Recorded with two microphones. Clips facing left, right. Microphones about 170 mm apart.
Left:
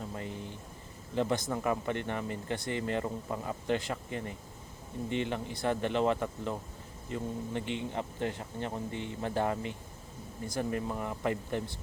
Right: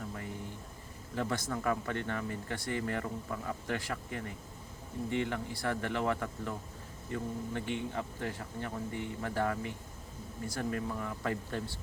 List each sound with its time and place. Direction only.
1.1 s speech: 20° left (ahead or behind)